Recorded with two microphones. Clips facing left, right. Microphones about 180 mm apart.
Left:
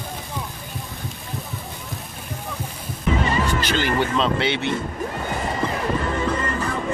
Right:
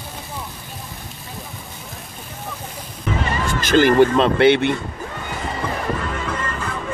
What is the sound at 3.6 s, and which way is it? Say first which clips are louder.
Speech: right 9 dB; 45° right (ahead or behind).